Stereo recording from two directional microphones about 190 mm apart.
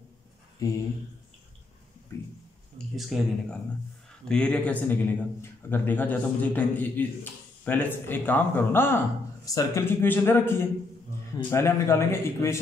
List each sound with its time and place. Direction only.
0.6 s speech: 15° left (ahead or behind)
3.0 s speech: centre (ahead or behind)